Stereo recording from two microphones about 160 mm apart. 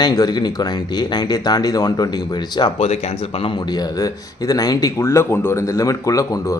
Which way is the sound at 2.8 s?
45° left (ahead or behind).